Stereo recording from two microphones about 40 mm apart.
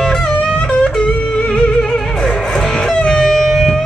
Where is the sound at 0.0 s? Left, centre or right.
Centre.